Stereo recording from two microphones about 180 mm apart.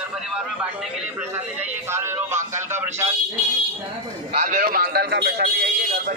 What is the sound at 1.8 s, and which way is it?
Speech, 15° right (ahead or behind).